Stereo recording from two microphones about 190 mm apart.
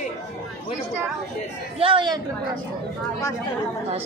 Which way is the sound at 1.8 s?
25° right (ahead or behind).